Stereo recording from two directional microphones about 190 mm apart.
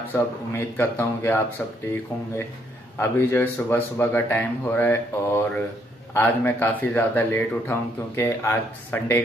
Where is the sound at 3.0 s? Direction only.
10° left (ahead or behind).